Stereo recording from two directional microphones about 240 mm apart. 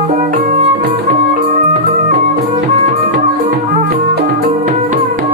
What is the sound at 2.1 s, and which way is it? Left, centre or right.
Music, right.